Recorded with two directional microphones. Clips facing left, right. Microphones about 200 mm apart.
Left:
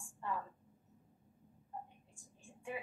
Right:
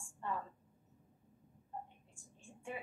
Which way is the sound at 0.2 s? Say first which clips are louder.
Even; 25° right (ahead or behind).